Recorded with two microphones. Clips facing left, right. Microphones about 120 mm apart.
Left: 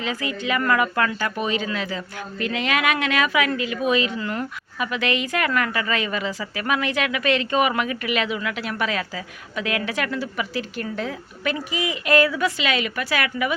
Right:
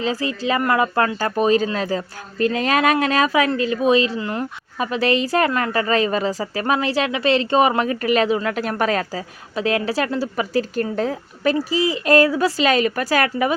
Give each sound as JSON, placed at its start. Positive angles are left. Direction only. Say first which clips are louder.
{"t": 0.0, "sound": "speech", "louder": "right 5 dB", "side_deg": -35}
{"t": 4.2, "sound": "speech", "louder": "right 2 dB", "side_deg": -20}
{"t": 4.8, "sound": "speech", "louder": "right 5 dB", "side_deg": -35}